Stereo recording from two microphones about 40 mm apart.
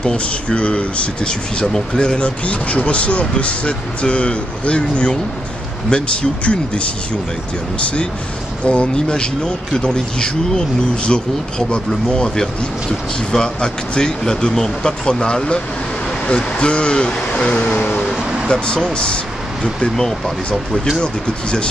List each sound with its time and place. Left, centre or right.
0.0 s speech: left
17.7 s vehicle: left
18.5 s speech: centre
20.0 s speech: centre
21.0 s speech: left